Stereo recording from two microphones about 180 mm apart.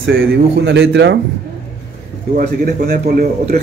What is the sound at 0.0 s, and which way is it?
Speech, 80° right.